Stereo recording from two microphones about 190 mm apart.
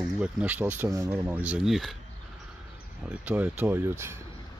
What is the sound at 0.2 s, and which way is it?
Speech, 10° right (ahead or behind).